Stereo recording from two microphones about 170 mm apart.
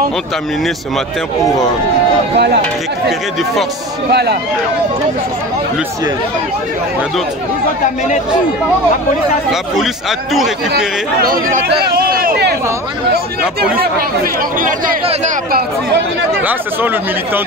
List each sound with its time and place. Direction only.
2.3 s speech: 75° right (ahead or behind)
4.1 s speech: 75° right (ahead or behind)
9.5 s a man's voice: centre (ahead or behind)
11.1 s speech: 55° right (ahead or behind)
11.8 s a sound: 60° right (ahead or behind)
13.7 s speech: 55° right (ahead or behind)
16.4 s speech: 10° right (ahead or behind)